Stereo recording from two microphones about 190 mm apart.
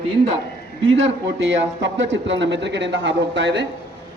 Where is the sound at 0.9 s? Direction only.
80° right.